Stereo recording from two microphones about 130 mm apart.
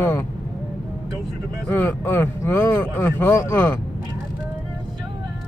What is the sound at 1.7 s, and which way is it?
Speech, 15° left (ahead or behind).